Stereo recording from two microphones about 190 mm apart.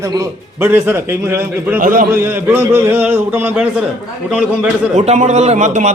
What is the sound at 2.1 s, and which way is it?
A man's voice, 10° right (ahead or behind).